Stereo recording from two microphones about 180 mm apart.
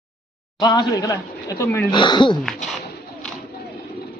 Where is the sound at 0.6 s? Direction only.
20° left (ahead or behind).